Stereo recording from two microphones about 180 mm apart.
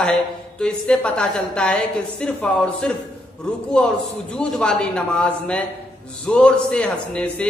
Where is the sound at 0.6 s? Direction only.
5° left (ahead or behind).